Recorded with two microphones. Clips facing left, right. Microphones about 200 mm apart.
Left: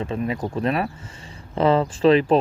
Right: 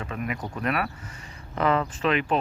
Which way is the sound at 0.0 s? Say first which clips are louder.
Left 7 dB; 30° left (ahead or behind).